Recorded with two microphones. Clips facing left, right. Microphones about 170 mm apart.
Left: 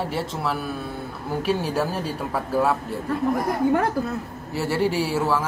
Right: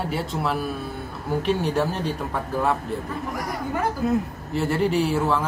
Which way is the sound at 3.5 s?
60° left (ahead or behind).